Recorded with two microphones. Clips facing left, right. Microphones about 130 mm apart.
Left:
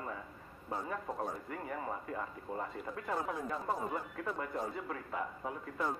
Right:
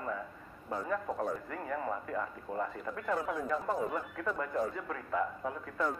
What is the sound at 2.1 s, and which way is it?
Speech, 25° left (ahead or behind).